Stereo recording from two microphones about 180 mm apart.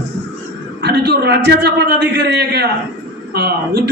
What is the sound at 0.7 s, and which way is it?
A man's voice, 65° right (ahead or behind).